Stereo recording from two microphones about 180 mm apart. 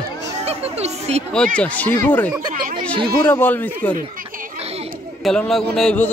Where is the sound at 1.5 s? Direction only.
10° left (ahead or behind).